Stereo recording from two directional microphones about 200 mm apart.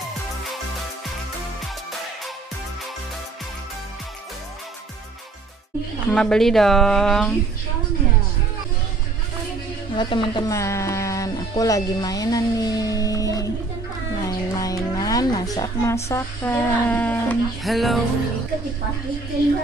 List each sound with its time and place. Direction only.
6.1 s a woman's voice: 5° left (ahead or behind)
9.9 s speech: 25° left (ahead or behind); by 18.0 s centre (ahead or behind)